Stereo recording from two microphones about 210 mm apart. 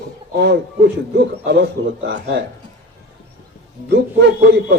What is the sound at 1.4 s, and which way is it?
A man's voice, 55° right (ahead or behind).